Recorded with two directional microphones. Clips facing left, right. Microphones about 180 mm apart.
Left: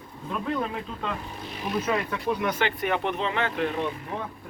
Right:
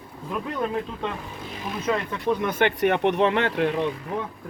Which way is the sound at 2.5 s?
55° right (ahead or behind).